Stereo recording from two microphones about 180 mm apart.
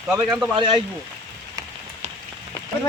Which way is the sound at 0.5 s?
30° right (ahead or behind).